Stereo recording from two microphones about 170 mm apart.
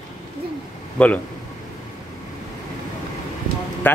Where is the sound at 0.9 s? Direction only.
10° left (ahead or behind).